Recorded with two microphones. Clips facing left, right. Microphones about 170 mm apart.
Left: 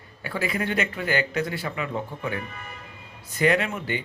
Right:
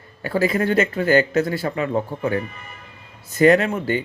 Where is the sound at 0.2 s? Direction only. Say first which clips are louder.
Right 8 dB; 40° right (ahead or behind).